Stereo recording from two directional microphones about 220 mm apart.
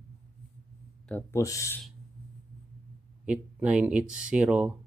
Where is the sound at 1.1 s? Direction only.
10° left (ahead or behind).